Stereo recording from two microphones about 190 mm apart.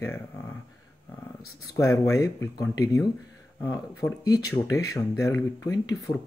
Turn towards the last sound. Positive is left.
turn(degrees=15)  # may be behind; listen again after turning